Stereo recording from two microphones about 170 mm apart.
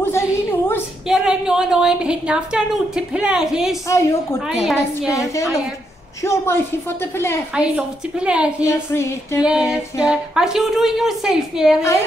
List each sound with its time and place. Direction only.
0.0 s a sound: 15° left (ahead or behind)
1.0 s a woman's voice: 5° right (ahead or behind)
3.8 s speech: 15° left (ahead or behind)
7.5 s a woman's voice: 5° right (ahead or behind)
8.6 s speech: 15° left (ahead or behind)
9.4 s a woman's voice: 5° right (ahead or behind)